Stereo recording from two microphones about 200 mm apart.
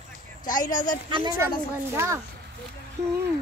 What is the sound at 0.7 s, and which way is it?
Speech, 40° left (ahead or behind).